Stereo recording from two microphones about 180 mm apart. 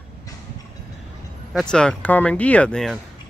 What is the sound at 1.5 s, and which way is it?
Speech, 5° left (ahead or behind).